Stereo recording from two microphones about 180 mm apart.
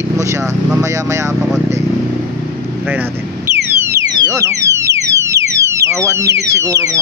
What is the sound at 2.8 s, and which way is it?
Speech, 10° right (ahead or behind).